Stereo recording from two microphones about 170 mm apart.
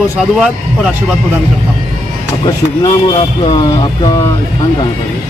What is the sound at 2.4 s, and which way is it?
Speech, 25° left (ahead or behind).